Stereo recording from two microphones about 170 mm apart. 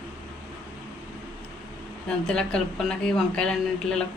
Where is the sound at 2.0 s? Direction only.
5° left (ahead or behind).